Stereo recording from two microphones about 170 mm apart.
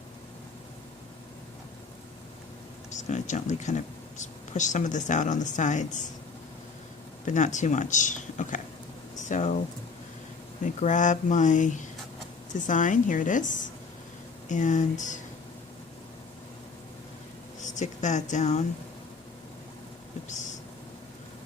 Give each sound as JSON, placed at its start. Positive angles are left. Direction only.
{"t": 2.9, "sound": "speech", "side_deg": 45}
{"t": 7.3, "sound": "speech", "side_deg": 45}
{"t": 17.6, "sound": "speech", "side_deg": 45}